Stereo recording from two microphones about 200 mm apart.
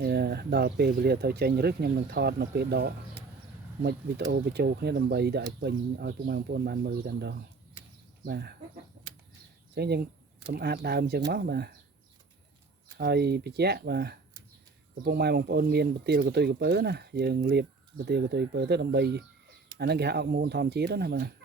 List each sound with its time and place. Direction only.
0.0 s speech: 50° right (ahead or behind)
9.7 s speech: 55° right (ahead or behind)
13.0 s speech: 55° right (ahead or behind)